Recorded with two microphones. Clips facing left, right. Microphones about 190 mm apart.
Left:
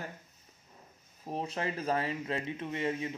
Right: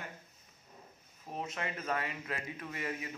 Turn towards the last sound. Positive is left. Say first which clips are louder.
# left 6 dB
turn(degrees=25)  # may be behind; listen again after turning